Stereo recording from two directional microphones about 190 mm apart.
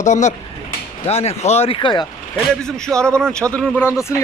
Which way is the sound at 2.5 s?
5° left (ahead or behind).